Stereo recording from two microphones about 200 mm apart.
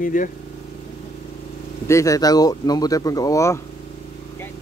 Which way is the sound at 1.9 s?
15° left (ahead or behind).